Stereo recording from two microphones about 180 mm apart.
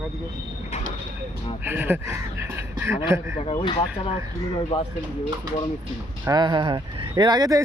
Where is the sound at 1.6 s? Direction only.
10° right (ahead or behind).